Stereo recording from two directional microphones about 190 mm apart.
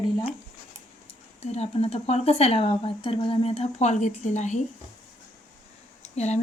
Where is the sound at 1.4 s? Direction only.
35° left (ahead or behind).